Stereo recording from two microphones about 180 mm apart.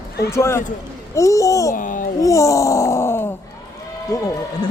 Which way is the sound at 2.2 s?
20° left (ahead or behind).